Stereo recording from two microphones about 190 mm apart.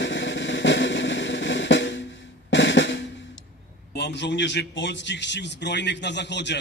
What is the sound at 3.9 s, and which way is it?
A man's voice, 65° left (ahead or behind).